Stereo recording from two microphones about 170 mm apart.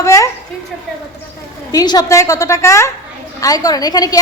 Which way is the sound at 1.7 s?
20° left (ahead or behind).